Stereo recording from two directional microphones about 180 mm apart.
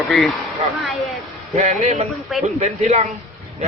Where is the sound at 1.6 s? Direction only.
35° right (ahead or behind).